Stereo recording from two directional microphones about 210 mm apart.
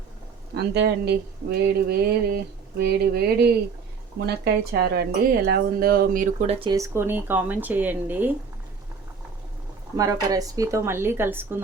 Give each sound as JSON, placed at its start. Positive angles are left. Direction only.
{"t": 0.5, "sound": "speech", "side_deg": -50}
{"t": 6.5, "sound": "speech", "side_deg": -20}
{"t": 10.0, "sound": "speech", "side_deg": -15}